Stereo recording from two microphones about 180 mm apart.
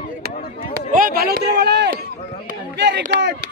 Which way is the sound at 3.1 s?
70° right (ahead or behind).